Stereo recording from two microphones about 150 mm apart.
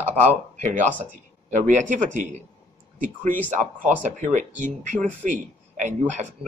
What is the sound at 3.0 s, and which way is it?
Speech, 60° right (ahead or behind).